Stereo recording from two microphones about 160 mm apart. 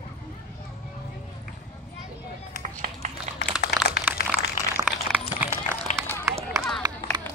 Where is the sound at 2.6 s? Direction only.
50° right (ahead or behind).